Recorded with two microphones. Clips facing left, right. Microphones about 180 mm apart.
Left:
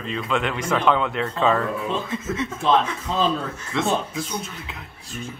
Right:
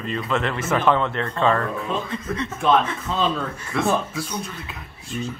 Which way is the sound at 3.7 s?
25° left (ahead or behind).